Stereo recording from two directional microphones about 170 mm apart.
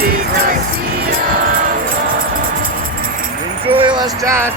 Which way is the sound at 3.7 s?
30° right (ahead or behind).